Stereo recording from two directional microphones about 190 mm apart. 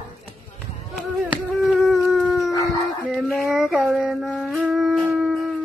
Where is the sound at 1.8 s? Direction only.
Centre (ahead or behind).